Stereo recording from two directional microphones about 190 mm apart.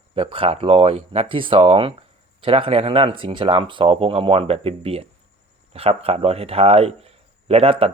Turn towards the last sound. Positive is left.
turn(degrees=-30)  # may be behind; listen again after turning